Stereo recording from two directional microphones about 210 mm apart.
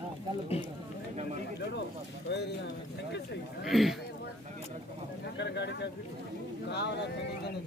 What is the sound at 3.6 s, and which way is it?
Speech, centre (ahead or behind).